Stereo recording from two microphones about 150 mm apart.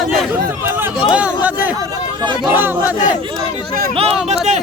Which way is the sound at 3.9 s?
40° right (ahead or behind).